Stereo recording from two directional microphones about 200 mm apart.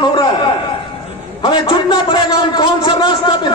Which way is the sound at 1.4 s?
25° left (ahead or behind).